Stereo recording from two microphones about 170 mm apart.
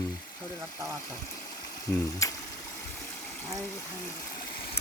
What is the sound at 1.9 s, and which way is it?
Speech, 15° left (ahead or behind).